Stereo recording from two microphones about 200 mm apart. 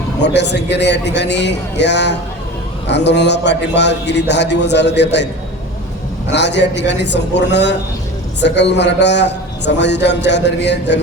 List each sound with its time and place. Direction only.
0.2 s a man's voice: 60° left (ahead or behind)